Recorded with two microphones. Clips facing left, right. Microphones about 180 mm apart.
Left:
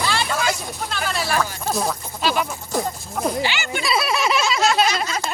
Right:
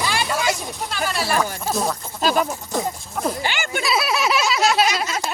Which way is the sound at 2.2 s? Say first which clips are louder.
Right 3 dB; 40° right (ahead or behind).